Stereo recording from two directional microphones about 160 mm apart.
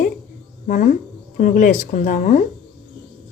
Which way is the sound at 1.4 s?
55° left (ahead or behind).